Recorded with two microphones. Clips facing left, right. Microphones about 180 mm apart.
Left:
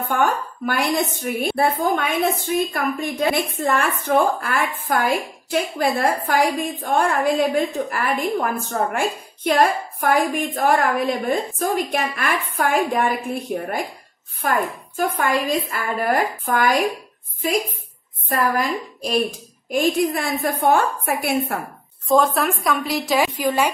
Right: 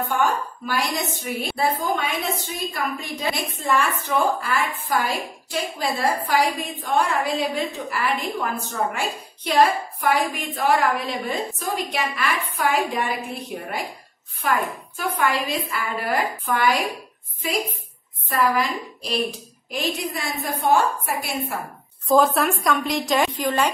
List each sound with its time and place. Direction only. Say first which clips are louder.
0.1 s a woman's voice: left 5 dB; 55° left (ahead or behind)
18.3 s a woman's voice: left 1 dB; 45° left (ahead or behind)
22.0 s a woman's voice: even; centre (ahead or behind)